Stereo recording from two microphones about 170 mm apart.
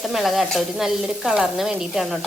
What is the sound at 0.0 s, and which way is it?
Sizzle, centre (ahead or behind).